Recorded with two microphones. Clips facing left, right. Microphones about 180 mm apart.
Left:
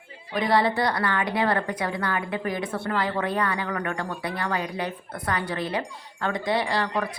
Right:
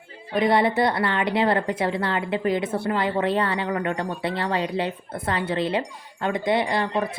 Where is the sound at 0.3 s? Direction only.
25° right (ahead or behind).